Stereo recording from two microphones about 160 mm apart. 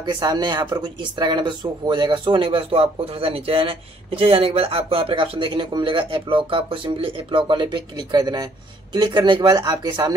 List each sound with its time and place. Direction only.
0.0 s speech: 30° right (ahead or behind)